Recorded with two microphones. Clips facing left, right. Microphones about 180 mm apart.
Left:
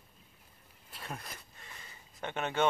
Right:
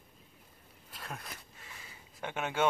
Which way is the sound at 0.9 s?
Centre (ahead or behind).